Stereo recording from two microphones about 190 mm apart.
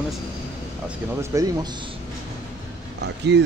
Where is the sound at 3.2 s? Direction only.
65° right (ahead or behind).